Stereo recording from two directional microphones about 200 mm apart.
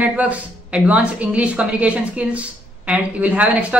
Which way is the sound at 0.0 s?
5° right (ahead or behind).